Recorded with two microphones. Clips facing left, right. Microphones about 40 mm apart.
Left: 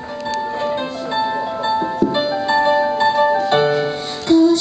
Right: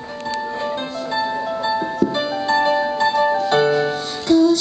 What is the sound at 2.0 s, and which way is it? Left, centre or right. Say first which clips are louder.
Music: left 2 dB; left.